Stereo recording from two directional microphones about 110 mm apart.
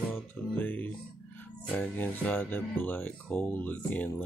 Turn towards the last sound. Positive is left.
turn(degrees=15)  # may be behind; listen again after turning